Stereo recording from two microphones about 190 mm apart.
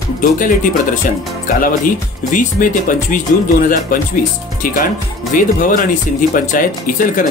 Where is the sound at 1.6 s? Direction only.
45° left (ahead or behind).